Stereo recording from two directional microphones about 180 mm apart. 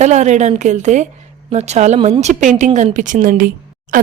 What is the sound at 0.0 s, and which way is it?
A woman's voice, 40° right (ahead or behind).